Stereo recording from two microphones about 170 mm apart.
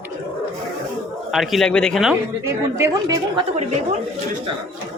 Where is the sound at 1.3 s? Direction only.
Centre (ahead or behind).